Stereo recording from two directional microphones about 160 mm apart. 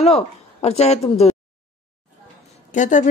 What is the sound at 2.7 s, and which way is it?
Speech, 50° left (ahead or behind).